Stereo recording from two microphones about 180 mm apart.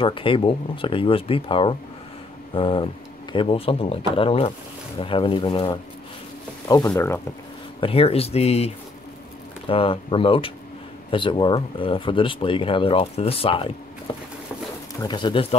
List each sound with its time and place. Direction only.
0.0 s speech: 30° left (ahead or behind)
6.9 s speech: 15° left (ahead or behind)
7.8 s speech: 30° left (ahead or behind)
15.0 s speech: 25° left (ahead or behind)